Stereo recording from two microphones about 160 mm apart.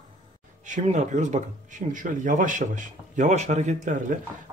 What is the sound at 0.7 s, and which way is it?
Speech, 50° right (ahead or behind).